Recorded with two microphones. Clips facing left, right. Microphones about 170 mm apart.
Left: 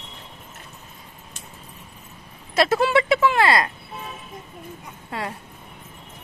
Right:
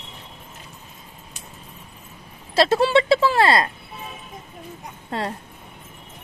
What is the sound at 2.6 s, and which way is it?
Speech, 30° right (ahead or behind).